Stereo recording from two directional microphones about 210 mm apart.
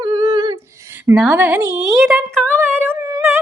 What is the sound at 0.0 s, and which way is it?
Humming, 20° right (ahead or behind).